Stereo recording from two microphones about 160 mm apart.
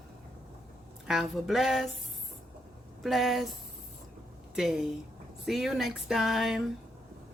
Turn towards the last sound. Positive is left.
turn(degrees=0)  # may be behind; listen again after turning